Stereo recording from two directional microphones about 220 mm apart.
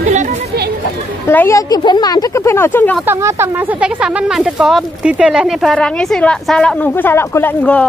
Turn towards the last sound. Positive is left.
turn(degrees=5)  # may be behind; listen again after turning